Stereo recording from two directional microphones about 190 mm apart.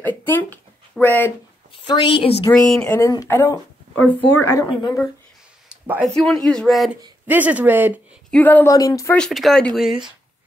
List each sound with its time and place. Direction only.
0.0 s speech: 10° left (ahead or behind)
1.7 s a woman's voice: 25° left (ahead or behind)
2.9 s a woman's voice: 20° left (ahead or behind)
5.7 s a sound: 5° right (ahead or behind)
6.0 s speech: centre (ahead or behind)
8.3 s speech: 10° left (ahead or behind)
9.1 s speech: centre (ahead or behind)